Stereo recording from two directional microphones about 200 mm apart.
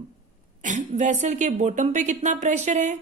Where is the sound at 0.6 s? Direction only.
35° right (ahead or behind).